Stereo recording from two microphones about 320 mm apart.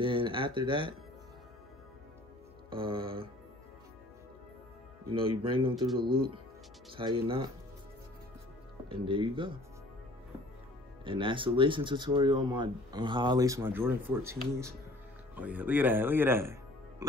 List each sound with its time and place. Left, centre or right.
0.0 s speech: centre
2.7 s speech: centre
5.1 s speech: centre
6.9 s speech: centre
8.8 s speech: centre
11.1 s speech: centre